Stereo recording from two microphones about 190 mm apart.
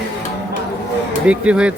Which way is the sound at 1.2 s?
5° right (ahead or behind).